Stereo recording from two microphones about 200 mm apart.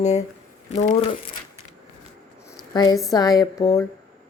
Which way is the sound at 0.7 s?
35° left (ahead or behind).